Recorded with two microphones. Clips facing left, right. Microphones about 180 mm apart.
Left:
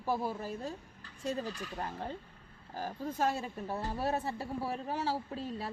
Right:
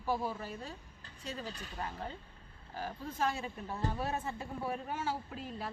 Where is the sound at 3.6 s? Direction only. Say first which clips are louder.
Left 2 dB; 30° left (ahead or behind).